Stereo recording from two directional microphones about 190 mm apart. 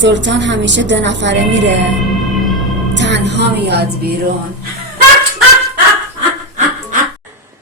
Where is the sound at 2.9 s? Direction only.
70° right (ahead or behind).